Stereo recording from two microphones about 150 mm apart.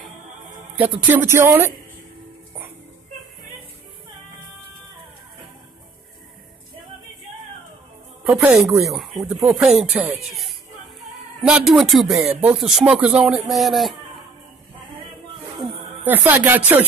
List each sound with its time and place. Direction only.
1.0 s speech: 15° right (ahead or behind)
8.3 s speech: 10° right (ahead or behind)
8.5 s speech: centre (ahead or behind)
16.1 s speech: 10° right (ahead or behind)